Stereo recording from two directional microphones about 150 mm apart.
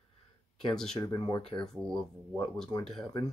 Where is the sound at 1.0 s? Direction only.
30° left (ahead or behind).